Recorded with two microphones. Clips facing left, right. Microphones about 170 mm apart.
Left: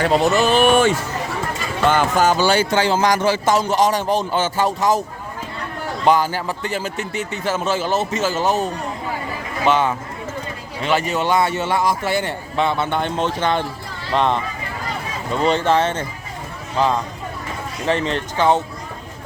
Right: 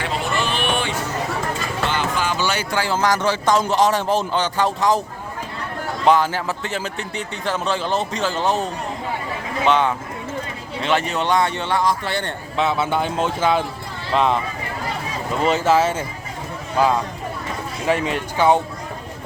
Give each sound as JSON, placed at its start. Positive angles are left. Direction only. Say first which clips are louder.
{"t": 0.0, "sound": "speech", "louder": "left 8 dB", "side_deg": 40}
{"t": 6.1, "sound": "speech", "louder": "even", "side_deg": 0}
{"t": 9.6, "sound": "speech", "louder": "left 1 dB", "side_deg": 0}
{"t": 12.5, "sound": "speech", "louder": "even", "side_deg": -5}
{"t": 15.4, "sound": "speech", "louder": "even", "side_deg": -5}
{"t": 17.8, "sound": "speech", "louder": "even", "side_deg": -10}